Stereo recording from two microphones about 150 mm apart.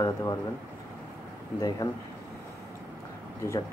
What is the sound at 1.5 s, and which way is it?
Speech, 25° left (ahead or behind).